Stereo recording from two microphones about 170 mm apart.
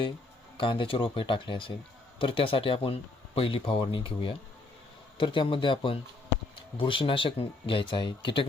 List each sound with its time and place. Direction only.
0.5 s speech: 30° left (ahead or behind)